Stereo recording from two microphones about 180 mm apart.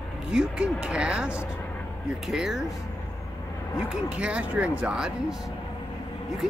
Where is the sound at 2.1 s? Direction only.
Centre (ahead or behind).